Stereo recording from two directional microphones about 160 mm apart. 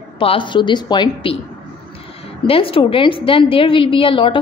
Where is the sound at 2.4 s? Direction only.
35° left (ahead or behind).